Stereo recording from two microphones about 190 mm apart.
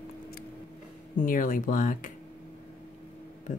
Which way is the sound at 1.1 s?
45° left (ahead or behind).